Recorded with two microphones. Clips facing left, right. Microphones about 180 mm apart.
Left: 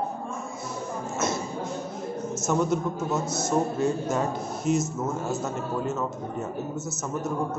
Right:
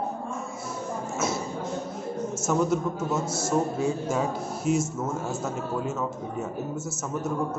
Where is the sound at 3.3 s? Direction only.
30° right (ahead or behind).